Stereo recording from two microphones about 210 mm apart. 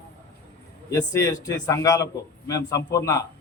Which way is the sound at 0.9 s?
15° left (ahead or behind).